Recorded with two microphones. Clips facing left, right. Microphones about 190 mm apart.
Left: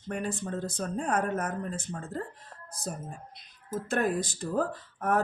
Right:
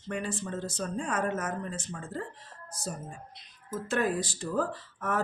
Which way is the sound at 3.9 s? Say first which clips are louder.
Left 1 dB; 60° left (ahead or behind).